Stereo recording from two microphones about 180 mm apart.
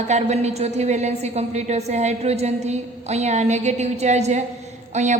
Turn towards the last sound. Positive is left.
turn(degrees=-40)  # may be behind; listen again after turning